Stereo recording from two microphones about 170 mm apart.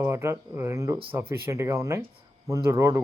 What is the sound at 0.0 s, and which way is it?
Speech, 15° right (ahead or behind).